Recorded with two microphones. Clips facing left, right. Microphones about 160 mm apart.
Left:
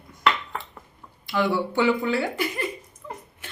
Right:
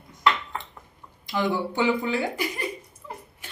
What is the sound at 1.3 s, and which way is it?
Speech, 15° right (ahead or behind).